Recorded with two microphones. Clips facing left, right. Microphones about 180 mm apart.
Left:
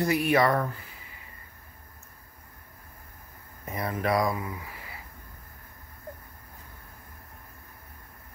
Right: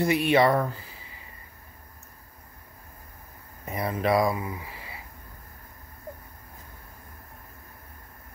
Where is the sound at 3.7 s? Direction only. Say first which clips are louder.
Right 3 dB; 20° right (ahead or behind).